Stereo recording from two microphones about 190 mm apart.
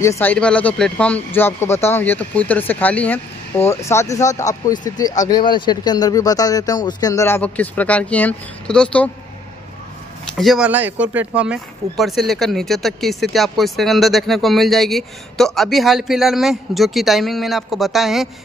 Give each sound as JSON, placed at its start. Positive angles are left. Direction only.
{"t": 0.0, "sound": "speech", "side_deg": 15}
{"t": 10.2, "sound": "speech", "side_deg": 0}